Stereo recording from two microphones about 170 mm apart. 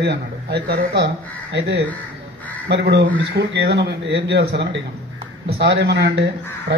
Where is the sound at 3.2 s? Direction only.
85° right.